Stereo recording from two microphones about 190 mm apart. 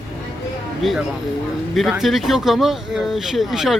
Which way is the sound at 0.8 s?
Centre (ahead or behind).